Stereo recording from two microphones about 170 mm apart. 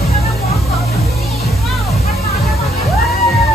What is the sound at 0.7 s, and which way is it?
Music, centre (ahead or behind).